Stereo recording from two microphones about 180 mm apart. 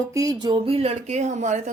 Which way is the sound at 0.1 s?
20° right (ahead or behind).